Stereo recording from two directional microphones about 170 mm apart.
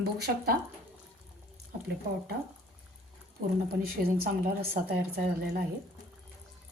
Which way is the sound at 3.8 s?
60° right (ahead or behind).